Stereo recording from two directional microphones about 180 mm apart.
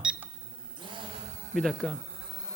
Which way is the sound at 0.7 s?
25° right (ahead or behind).